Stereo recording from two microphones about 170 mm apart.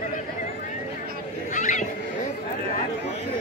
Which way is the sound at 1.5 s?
45° left (ahead or behind).